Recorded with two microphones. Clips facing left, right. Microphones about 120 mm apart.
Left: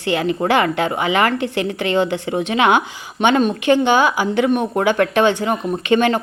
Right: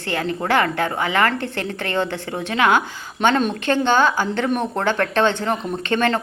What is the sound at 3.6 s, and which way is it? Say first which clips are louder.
A woman's voice: left 3 dB; 15° left (ahead or behind).